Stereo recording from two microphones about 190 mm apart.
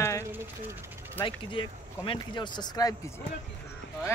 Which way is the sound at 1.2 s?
25° left (ahead or behind).